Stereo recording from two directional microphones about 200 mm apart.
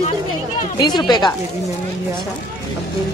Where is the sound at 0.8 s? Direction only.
20° left (ahead or behind).